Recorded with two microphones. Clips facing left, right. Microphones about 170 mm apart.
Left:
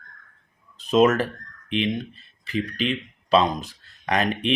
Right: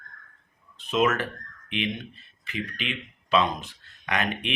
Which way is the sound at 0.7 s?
40° left (ahead or behind).